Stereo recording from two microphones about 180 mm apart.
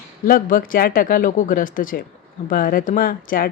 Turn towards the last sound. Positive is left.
turn(degrees=50)  # may be behind; listen again after turning